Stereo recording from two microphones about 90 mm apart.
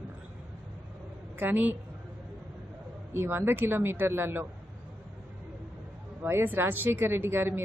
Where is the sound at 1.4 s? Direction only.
20° right (ahead or behind).